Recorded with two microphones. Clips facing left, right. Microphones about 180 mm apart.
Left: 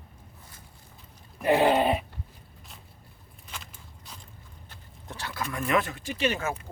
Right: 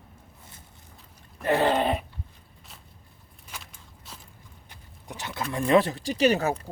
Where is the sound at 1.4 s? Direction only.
15° left (ahead or behind).